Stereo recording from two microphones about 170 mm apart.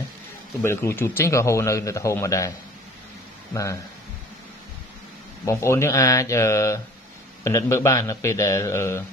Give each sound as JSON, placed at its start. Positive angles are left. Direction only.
{"t": 0.6, "sound": "a man's voice", "side_deg": 15}
{"t": 5.4, "sound": "a man's voice", "side_deg": 15}